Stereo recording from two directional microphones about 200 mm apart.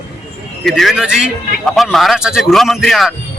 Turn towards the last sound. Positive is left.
turn(degrees=0)  # may be behind; listen again after turning